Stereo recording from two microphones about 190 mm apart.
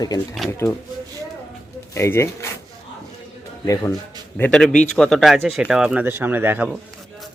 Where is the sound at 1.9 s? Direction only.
15° left (ahead or behind).